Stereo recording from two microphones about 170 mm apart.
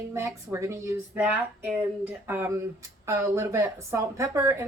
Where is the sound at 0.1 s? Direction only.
15° right (ahead or behind).